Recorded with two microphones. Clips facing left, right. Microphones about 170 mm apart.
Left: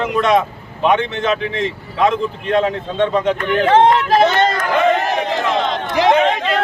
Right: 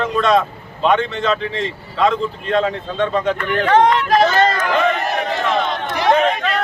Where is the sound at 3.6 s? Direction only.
25° left (ahead or behind).